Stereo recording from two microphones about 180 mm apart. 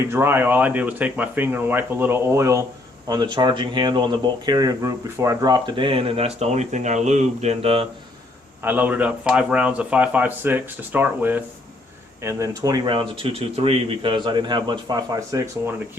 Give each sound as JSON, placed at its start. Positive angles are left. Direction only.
{"t": 0.1, "sound": "speech", "side_deg": -10}
{"t": 8.6, "sound": "speech", "side_deg": -10}